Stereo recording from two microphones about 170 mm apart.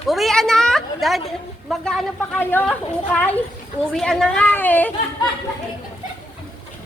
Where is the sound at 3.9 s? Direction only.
5° left (ahead or behind).